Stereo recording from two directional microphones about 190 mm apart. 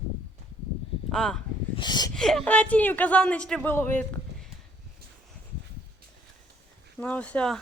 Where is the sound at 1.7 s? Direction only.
25° left (ahead or behind).